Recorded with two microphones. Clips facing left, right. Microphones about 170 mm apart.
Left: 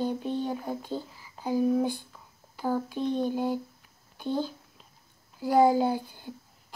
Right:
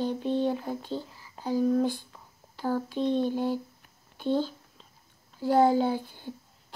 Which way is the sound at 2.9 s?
10° left (ahead or behind).